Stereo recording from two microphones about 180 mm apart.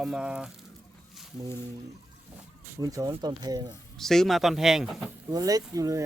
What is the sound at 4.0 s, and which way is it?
A man's voice, centre (ahead or behind).